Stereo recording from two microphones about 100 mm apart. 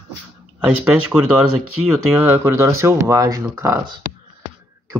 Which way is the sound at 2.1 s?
25° right (ahead or behind).